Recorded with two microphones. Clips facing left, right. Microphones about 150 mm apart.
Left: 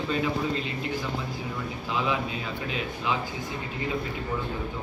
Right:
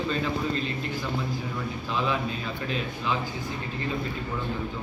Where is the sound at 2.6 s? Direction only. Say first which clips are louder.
Right 1 dB; 15° left (ahead or behind).